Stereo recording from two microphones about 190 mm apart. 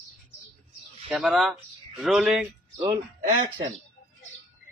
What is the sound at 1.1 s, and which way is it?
Speech, centre (ahead or behind).